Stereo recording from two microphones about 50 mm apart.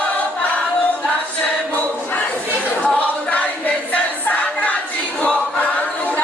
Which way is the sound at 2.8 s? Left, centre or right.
Left.